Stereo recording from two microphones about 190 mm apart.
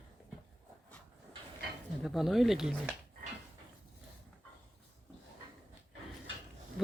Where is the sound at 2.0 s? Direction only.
Centre (ahead or behind).